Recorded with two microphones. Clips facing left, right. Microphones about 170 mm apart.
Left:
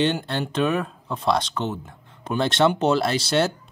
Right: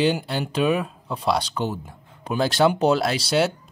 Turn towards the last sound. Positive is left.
turn(degrees=-5)  # may be behind; listen again after turning